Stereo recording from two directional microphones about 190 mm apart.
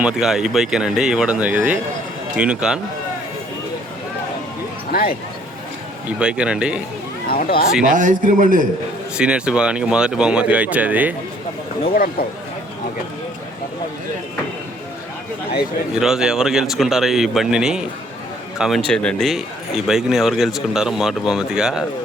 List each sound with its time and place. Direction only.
0.0 s speech: 5° right (ahead or behind)
4.9 s speech: 55° left (ahead or behind)
6.1 s speech: 5° right (ahead or behind)
7.3 s speech: 55° left (ahead or behind)
7.9 s a man's voice: 45° right (ahead or behind)
9.1 s speech: 5° right (ahead or behind)
16.0 s a man's voice: centre (ahead or behind)